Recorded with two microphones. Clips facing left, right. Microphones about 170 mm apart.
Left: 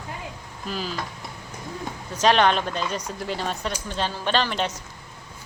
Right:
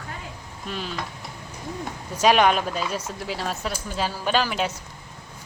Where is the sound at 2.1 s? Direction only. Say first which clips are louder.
Right 1 dB; 10° right (ahead or behind).